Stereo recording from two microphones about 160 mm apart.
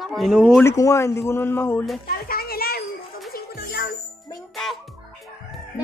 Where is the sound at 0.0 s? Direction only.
Centre (ahead or behind).